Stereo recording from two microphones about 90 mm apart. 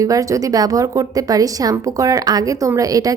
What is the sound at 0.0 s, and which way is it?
A woman's voice, 40° right (ahead or behind).